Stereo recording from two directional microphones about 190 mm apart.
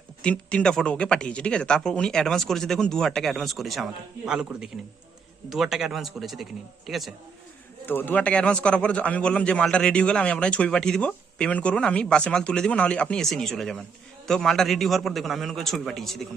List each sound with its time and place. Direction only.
0.2 s speech: 5° left (ahead or behind)